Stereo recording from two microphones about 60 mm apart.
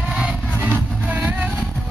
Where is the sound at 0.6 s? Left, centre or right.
Right.